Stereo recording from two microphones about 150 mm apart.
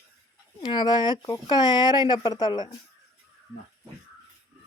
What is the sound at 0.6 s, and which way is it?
Speech, 30° left (ahead or behind).